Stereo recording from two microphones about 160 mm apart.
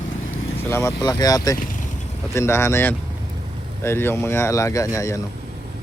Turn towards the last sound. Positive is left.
turn(degrees=20)  # may be behind; listen again after turning